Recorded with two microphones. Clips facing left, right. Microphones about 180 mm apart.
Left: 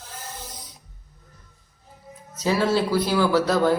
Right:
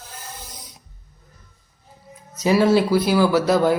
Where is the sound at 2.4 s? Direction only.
15° right (ahead or behind).